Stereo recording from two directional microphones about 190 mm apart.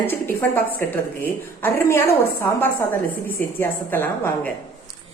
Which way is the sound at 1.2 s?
10° left (ahead or behind).